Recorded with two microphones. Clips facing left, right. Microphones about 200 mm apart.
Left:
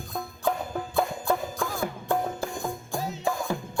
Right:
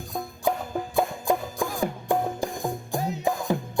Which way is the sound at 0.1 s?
15° right (ahead or behind).